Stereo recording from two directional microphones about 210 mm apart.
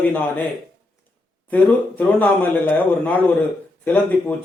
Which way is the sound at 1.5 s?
10° left (ahead or behind).